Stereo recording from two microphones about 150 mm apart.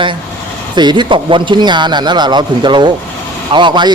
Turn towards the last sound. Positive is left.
turn(degrees=-30)  # may be behind; listen again after turning